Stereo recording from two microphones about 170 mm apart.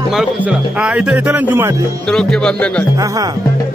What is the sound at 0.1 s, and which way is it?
Speech, 5° right (ahead or behind).